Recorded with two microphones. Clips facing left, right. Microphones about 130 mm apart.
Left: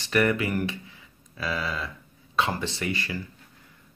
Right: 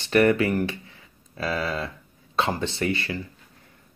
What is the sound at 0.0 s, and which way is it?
Speech, 30° right (ahead or behind).